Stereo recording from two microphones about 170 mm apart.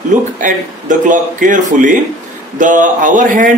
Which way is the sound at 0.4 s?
50° right (ahead or behind).